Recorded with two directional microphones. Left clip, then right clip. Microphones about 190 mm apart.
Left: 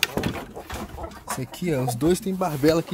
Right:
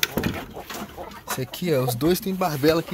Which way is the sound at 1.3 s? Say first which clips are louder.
Right 4 dB; 5° left (ahead or behind).